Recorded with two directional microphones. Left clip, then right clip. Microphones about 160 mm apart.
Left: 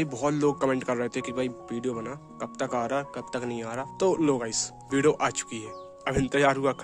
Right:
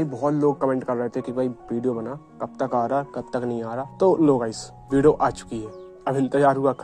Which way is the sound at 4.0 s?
Centre (ahead or behind).